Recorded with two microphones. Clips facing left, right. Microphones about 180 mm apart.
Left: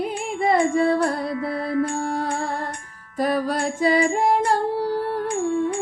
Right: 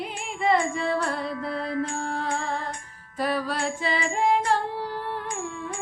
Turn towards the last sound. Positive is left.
turn(degrees=40)  # may be behind; listen again after turning